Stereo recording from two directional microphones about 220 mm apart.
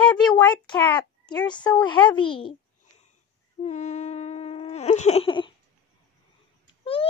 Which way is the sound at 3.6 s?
30° left (ahead or behind).